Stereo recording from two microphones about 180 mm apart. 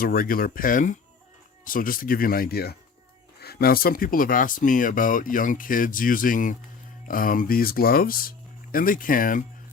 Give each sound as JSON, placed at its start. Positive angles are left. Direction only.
{"t": 0.0, "sound": "speech", "side_deg": 55}